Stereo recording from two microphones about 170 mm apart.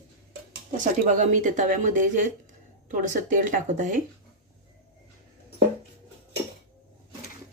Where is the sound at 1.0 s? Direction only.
45° right (ahead or behind).